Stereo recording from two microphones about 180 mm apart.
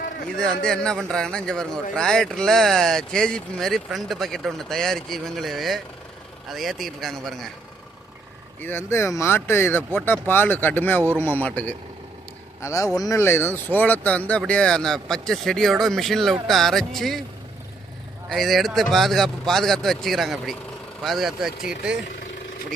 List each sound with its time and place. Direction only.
0.3 s a man's voice: 5° left (ahead or behind)
8.6 s a man's voice: 15° left (ahead or behind)
18.3 s a man's voice: centre (ahead or behind)